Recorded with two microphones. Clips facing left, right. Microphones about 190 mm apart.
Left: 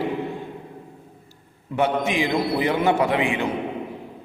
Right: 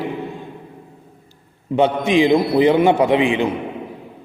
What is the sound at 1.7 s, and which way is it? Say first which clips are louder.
A man's voice: right 6 dB; 20° right (ahead or behind).